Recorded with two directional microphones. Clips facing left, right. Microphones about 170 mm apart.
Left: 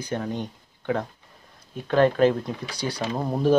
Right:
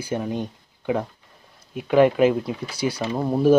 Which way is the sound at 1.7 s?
10° right (ahead or behind).